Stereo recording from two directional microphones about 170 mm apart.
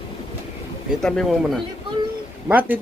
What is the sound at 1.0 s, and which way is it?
Speech, centre (ahead or behind).